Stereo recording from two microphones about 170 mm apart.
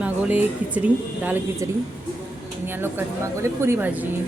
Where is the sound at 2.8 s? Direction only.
15° right (ahead or behind).